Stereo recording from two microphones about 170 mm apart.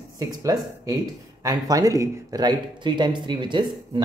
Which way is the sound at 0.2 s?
20° right (ahead or behind).